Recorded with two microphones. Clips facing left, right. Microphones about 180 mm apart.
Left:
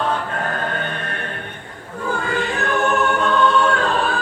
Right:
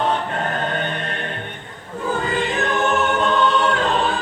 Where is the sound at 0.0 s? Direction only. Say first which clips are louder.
Right 1 dB; 25° right (ahead or behind).